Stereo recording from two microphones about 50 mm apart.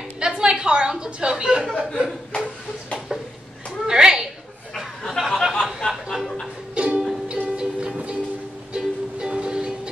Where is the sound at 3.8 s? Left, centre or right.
Centre.